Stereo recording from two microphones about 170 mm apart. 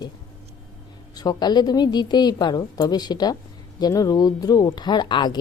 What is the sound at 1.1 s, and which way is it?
A woman's voice, 25° left (ahead or behind).